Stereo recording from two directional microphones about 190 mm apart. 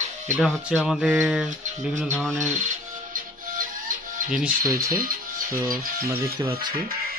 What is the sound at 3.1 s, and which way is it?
Music, 45° right (ahead or behind).